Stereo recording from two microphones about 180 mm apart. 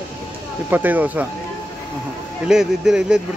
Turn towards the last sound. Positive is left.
turn(degrees=-5)  # may be behind; listen again after turning